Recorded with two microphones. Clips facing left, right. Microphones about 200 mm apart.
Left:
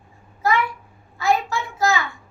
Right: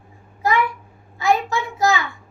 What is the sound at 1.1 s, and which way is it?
Speech, 20° right (ahead or behind).